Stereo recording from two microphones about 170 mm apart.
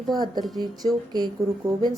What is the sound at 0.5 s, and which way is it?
Speech, 25° right (ahead or behind).